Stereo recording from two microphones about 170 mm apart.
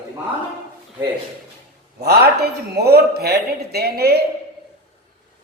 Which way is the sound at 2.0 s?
70° right (ahead or behind).